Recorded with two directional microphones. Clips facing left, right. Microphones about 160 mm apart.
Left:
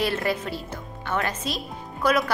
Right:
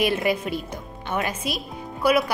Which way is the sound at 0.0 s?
15° right (ahead or behind).